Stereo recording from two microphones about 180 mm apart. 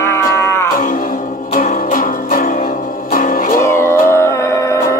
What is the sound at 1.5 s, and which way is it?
Music, 50° left (ahead or behind).